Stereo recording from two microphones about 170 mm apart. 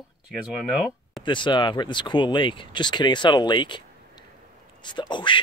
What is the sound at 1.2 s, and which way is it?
Speech, 30° left (ahead or behind).